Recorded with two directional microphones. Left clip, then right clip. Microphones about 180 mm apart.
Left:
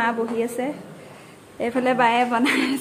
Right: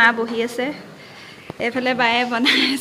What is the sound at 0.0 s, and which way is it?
Speech, centre (ahead or behind).